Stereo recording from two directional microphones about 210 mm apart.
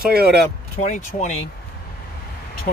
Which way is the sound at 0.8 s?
35° left (ahead or behind).